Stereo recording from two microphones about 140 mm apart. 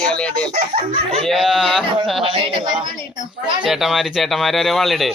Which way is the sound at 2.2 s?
40° right (ahead or behind).